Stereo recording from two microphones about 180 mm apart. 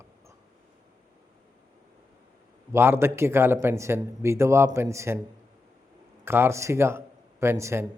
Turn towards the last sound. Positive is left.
turn(degrees=-15)  # may be behind; listen again after turning